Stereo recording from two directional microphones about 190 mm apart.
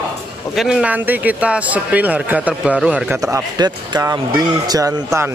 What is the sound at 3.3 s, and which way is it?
Speech, 20° right (ahead or behind).